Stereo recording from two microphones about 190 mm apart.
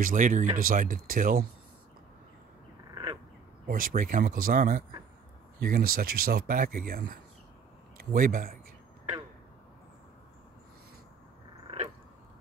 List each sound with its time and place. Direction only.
0.0 s speech: 45° right (ahead or behind)
2.9 s duck: 20° right (ahead or behind)
3.6 s speech: 45° right (ahead or behind)